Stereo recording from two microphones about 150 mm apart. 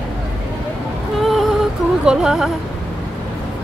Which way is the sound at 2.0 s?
5° right (ahead or behind).